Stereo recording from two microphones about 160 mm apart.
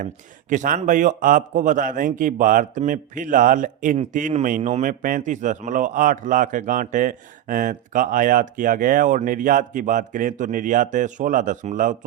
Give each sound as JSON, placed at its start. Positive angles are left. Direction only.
{"t": 0.5, "sound": "a man's voice", "side_deg": -55}